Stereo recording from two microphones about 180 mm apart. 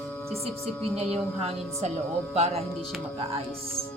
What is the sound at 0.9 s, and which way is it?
Speech, 35° right (ahead or behind).